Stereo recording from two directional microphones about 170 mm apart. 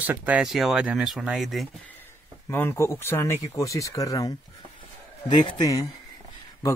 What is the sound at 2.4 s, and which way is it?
Speech, 15° left (ahead or behind).